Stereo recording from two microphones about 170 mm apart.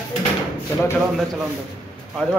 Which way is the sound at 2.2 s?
5° left (ahead or behind).